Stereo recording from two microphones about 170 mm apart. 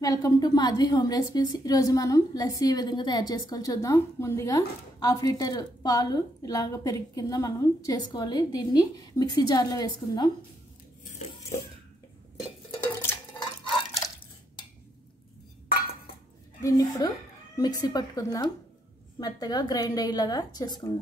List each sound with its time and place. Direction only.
0.0 s a woman's voice: 20° left (ahead or behind)
16.6 s a woman's voice: 20° left (ahead or behind)